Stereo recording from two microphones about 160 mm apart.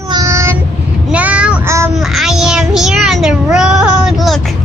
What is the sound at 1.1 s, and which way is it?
Child singing, 10° right (ahead or behind).